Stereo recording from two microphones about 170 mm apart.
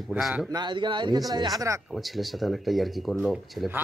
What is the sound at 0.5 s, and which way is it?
Speech, 25° right (ahead or behind).